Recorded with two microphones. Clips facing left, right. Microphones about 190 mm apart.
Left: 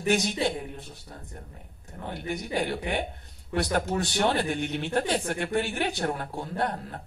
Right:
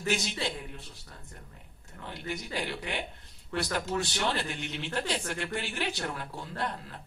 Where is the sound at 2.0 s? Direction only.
50° left (ahead or behind).